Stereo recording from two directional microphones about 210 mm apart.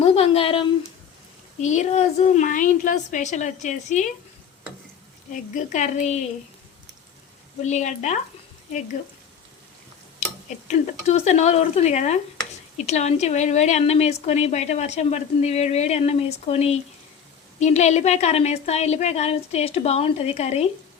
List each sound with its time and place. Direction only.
0.0 s a woman's voice: 25° left (ahead or behind)
5.3 s a woman's voice: 35° left (ahead or behind)
7.7 s a woman's voice: 35° left (ahead or behind)
10.7 s a woman's voice: 35° left (ahead or behind)